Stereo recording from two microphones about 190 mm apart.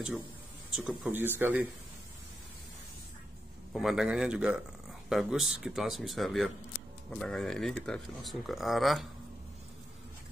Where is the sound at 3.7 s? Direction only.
Centre (ahead or behind).